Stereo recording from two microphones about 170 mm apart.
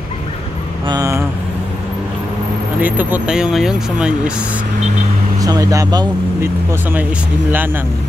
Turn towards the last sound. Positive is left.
turn(degrees=-20)  # may be behind; listen again after turning